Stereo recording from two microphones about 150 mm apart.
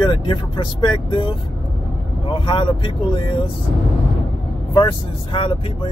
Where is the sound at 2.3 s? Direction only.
35° left (ahead or behind).